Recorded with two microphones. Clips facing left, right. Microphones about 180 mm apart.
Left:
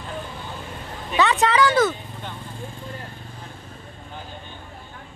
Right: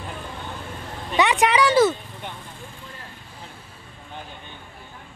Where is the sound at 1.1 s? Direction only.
15° right (ahead or behind).